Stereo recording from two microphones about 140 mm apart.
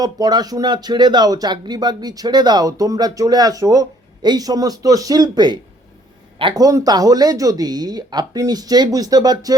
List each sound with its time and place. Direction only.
0.0 s speech: 30° right (ahead or behind)